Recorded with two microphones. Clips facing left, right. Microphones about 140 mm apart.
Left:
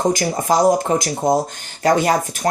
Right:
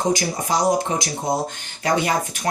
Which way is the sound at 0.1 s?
50° left (ahead or behind).